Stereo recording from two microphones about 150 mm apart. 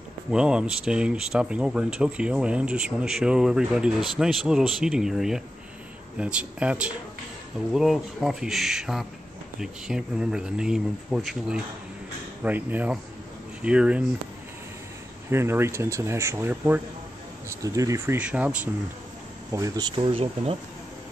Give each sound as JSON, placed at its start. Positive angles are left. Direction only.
{"t": 0.3, "sound": "speech", "side_deg": -5}
{"t": 15.2, "sound": "speech", "side_deg": -15}
{"t": 19.5, "sound": "speech", "side_deg": -25}